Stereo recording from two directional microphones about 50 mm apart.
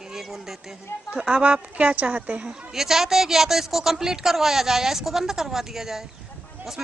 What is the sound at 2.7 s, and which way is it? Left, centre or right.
Speech, centre.